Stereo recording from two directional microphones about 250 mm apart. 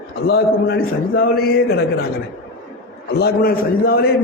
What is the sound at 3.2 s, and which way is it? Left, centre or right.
Speech, left.